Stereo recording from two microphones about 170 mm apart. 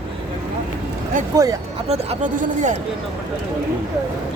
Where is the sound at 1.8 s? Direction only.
45° right (ahead or behind).